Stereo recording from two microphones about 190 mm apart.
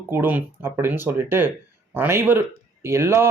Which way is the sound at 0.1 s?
10° right (ahead or behind).